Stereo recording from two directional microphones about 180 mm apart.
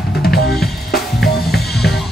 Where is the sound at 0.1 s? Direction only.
60° left (ahead or behind).